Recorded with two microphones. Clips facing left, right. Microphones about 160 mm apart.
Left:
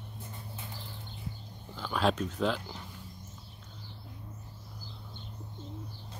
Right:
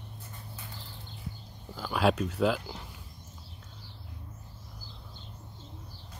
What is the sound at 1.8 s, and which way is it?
Speech, 10° right (ahead or behind).